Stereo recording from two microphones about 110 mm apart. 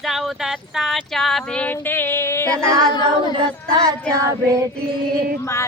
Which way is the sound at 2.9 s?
40° left (ahead or behind).